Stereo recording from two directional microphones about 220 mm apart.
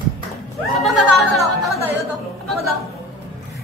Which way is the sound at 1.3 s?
Centre (ahead or behind).